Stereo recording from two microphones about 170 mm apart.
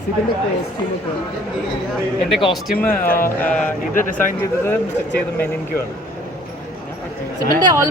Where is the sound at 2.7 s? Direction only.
10° left (ahead or behind).